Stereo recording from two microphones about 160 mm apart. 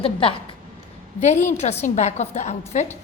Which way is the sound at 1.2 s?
45° left (ahead or behind).